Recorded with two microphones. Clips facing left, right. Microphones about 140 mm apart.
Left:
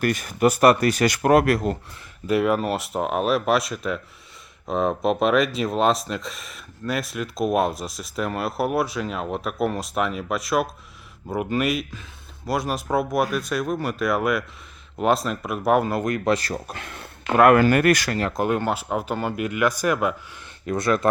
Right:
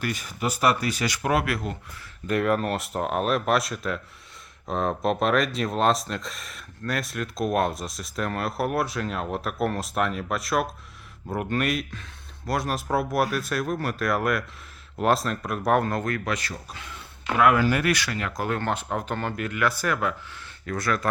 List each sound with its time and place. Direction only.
0.0 s speech: 55° left (ahead or behind)
2.2 s speech: 5° left (ahead or behind)
16.0 s speech: 20° left (ahead or behind)
16.3 s speech: 40° left (ahead or behind)
16.6 s speech: 60° left (ahead or behind); by 18.3 s 40° left (ahead or behind)
18.3 s speech: 15° left (ahead or behind)